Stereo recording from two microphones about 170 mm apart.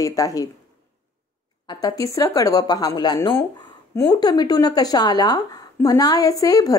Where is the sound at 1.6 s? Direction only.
20° left (ahead or behind).